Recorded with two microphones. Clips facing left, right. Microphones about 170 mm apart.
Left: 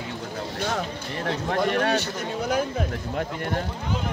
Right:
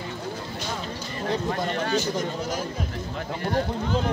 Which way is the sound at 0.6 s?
65° left (ahead or behind).